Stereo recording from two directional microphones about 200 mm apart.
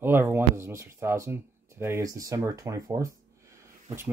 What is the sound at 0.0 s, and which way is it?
Speech, 10° right (ahead or behind).